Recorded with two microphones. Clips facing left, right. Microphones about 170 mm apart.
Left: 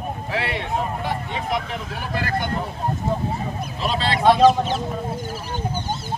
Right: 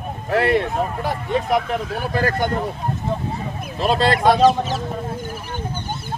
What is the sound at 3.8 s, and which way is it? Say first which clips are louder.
Speech: right 6 dB; 50° right (ahead or behind).